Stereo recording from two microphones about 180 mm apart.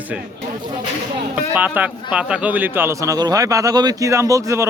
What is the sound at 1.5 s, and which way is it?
A man's voice, 10° right (ahead or behind).